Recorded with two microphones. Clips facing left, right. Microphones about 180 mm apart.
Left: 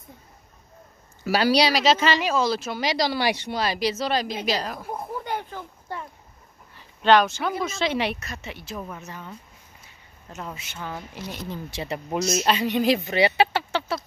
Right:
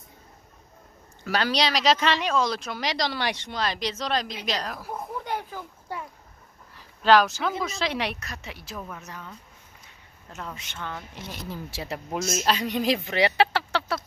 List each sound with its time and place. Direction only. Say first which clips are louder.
1.2 s speech: left 5 dB; 10° left (ahead or behind)
4.9 s a sound: left 1 dB; centre (ahead or behind)
7.6 s speech: left 3 dB; centre (ahead or behind)
10.3 s speech: left 2 dB; 5° left (ahead or behind)
11.4 s speech: left 2 dB; 5° right (ahead or behind)
12.2 s speech: left 4 dB; 50° right (ahead or behind)
12.4 s speech: left 3 dB; centre (ahead or behind)